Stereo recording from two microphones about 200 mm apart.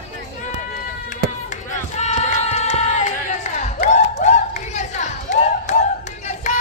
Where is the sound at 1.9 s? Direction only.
35° left (ahead or behind).